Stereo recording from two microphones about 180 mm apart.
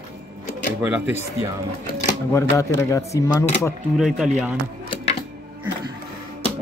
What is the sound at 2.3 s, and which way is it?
Speech, 15° left (ahead or behind).